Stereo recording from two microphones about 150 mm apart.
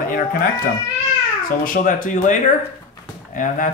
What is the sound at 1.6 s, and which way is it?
Speech, 65° left (ahead or behind).